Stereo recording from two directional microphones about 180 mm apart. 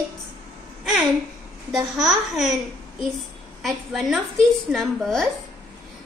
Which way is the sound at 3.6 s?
Centre (ahead or behind).